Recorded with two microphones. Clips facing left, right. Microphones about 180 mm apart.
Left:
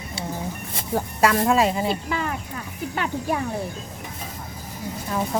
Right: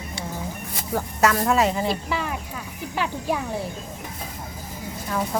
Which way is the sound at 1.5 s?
15° left (ahead or behind).